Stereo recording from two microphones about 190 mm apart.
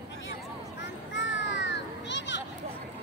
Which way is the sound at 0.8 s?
70° left (ahead or behind).